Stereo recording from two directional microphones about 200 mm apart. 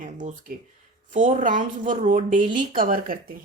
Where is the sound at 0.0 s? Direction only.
40° right (ahead or behind).